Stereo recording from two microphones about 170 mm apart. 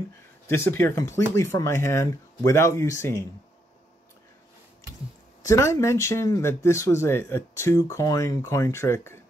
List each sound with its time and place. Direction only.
0.5 s speech: 15° left (ahead or behind)
5.4 s speech: 15° left (ahead or behind)